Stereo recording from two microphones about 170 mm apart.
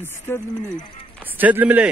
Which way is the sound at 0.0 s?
15° left (ahead or behind).